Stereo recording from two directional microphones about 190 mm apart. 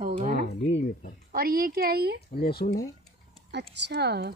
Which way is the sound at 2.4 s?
55° left (ahead or behind).